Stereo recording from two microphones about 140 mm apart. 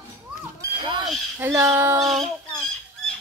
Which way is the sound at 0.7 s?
35° right (ahead or behind).